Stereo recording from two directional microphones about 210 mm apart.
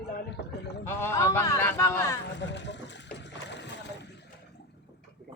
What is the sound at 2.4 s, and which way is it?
Boat, 55° left (ahead or behind).